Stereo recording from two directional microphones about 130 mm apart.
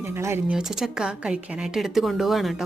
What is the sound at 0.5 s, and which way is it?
A woman's voice, 5° right (ahead or behind).